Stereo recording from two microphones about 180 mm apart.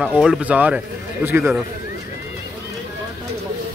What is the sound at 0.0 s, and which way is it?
Speech, 5° right (ahead or behind).